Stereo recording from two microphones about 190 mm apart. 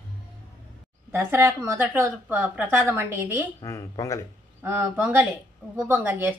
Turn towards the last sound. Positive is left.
turn(degrees=-10)  # may be behind; listen again after turning